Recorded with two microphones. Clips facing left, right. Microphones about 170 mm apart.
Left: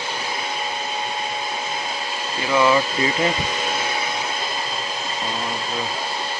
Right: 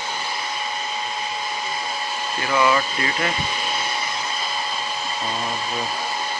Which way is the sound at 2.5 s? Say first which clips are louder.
Left 2 dB; 20° left (ahead or behind).